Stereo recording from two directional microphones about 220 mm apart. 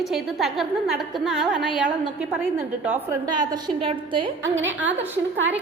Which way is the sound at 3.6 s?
25° right (ahead or behind).